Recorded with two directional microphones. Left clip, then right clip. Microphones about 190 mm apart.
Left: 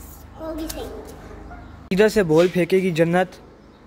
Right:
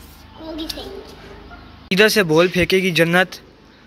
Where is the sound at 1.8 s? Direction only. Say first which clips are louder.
Right 3 dB; 10° left (ahead or behind).